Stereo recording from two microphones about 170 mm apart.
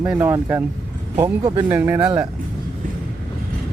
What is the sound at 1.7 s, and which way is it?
Speech, 15° right (ahead or behind).